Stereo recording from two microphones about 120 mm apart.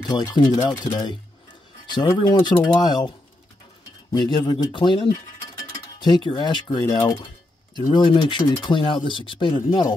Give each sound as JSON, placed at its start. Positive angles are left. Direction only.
{"t": 0.0, "sound": "speech", "side_deg": 35}
{"t": 4.1, "sound": "speech", "side_deg": 35}